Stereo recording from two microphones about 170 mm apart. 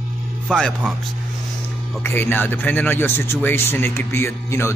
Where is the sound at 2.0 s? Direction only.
10° left (ahead or behind).